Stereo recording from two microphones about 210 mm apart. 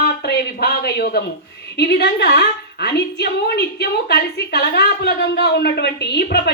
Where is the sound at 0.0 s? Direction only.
50° left (ahead or behind).